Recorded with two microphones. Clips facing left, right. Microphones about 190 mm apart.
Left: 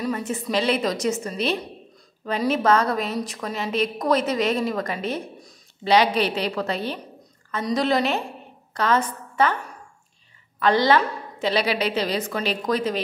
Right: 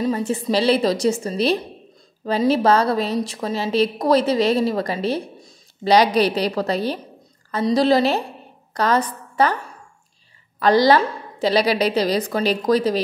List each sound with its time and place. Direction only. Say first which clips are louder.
0.0 s a woman's voice: right 5 dB; 30° right (ahead or behind)
10.6 s a woman's voice: right 4 dB; 35° right (ahead or behind)